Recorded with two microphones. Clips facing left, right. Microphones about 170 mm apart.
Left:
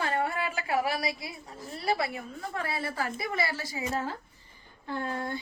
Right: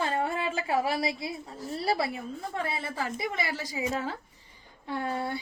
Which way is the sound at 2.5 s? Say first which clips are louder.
Left 1 dB; 20° right (ahead or behind).